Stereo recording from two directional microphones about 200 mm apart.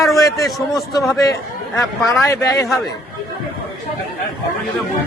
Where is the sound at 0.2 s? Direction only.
15° left (ahead or behind).